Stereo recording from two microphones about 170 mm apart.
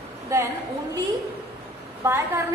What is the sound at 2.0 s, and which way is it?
Speech, 15° right (ahead or behind).